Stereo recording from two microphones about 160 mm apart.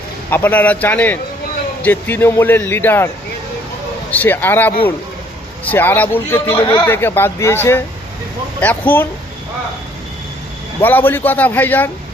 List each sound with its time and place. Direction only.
0.3 s speech: 15° left (ahead or behind)
4.1 s speech: 10° left (ahead or behind)
6.6 s speech: 30° left (ahead or behind)
6.8 s speech: 15° left (ahead or behind)
10.8 s speech: 10° left (ahead or behind)